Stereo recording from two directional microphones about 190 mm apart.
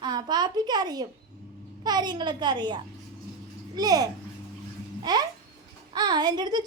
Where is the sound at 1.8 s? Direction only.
20° right (ahead or behind).